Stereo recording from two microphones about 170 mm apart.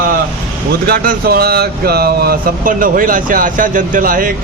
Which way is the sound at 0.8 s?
60° right (ahead or behind).